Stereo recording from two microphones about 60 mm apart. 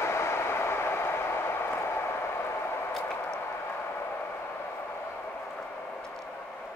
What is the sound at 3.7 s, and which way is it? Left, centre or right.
Vehicle, left.